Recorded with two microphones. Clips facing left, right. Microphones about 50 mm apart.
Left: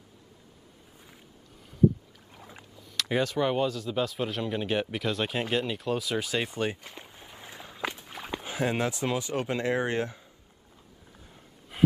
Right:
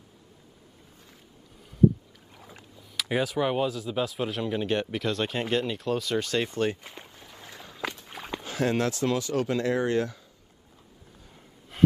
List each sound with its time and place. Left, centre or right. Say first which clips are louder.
2.3 s rowboat: left 1 dB; centre
2.9 s speech: even; centre
7.1 s a sound: even; centre
8.1 s walk: even; centre
8.4 s speech: right 2 dB; centre
11.7 s a sound: right 2 dB; centre